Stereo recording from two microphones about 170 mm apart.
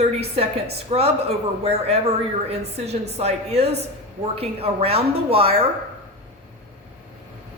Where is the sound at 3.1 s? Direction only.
40° right (ahead or behind).